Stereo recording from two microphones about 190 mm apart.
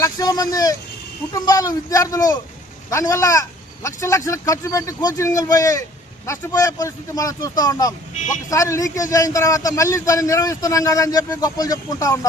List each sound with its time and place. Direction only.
0.0 s a man's voice: 20° left (ahead or behind)